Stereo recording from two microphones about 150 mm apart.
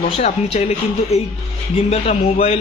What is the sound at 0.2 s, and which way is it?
Speech, 45° left (ahead or behind).